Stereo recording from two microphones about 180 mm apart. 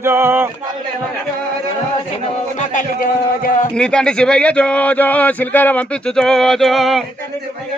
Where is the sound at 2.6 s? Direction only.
50° left (ahead or behind).